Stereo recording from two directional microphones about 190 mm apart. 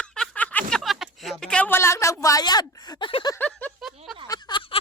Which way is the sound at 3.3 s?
10° left (ahead or behind).